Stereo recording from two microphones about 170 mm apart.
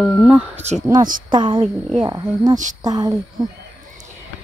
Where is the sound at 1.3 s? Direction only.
25° right (ahead or behind).